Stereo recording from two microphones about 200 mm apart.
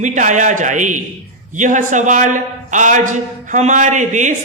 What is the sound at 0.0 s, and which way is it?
A man's voice, 40° right (ahead or behind).